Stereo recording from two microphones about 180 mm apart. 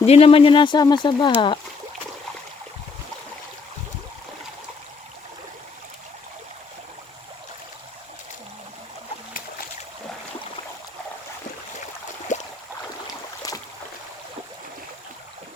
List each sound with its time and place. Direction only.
0.0 s speech: 35° left (ahead or behind)
12.3 s boat: 45° left (ahead or behind)